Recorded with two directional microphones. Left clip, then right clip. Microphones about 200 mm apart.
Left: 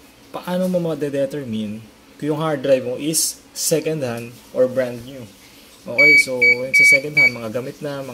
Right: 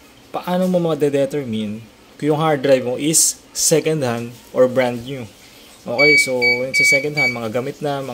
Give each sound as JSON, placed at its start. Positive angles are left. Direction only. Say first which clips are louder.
{"t": 0.3, "sound": "a man's voice", "louder": "right 3 dB", "side_deg": -10}